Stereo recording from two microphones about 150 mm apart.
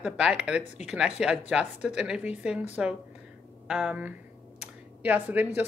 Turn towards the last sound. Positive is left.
turn(degrees=-10)  # may be behind; listen again after turning